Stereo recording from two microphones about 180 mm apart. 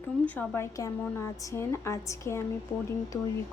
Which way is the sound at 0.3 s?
10° left (ahead or behind).